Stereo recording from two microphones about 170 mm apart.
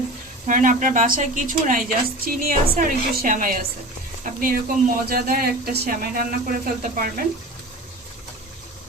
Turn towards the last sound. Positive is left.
turn(degrees=-55)  # may be behind; listen again after turning